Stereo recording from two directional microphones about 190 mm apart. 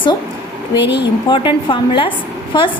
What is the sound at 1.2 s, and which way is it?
A woman's voice, 25° left (ahead or behind).